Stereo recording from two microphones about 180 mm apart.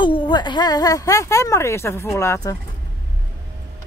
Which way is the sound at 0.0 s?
25° left (ahead or behind).